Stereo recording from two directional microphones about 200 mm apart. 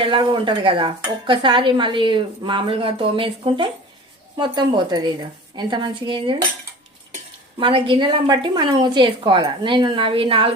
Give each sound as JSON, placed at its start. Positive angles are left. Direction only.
{"t": 0.0, "sound": "a woman's voice", "side_deg": -25}
{"t": 7.6, "sound": "a woman's voice", "side_deg": -25}